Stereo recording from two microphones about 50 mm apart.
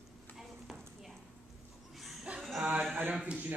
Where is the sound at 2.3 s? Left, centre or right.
Right.